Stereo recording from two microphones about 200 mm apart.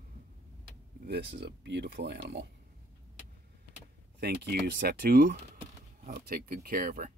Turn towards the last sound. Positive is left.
turn(degrees=-45)  # may be behind; listen again after turning